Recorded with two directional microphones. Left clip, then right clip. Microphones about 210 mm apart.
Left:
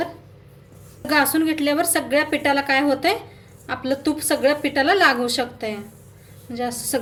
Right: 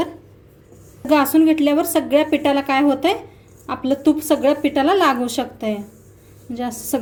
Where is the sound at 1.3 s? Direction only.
35° right (ahead or behind).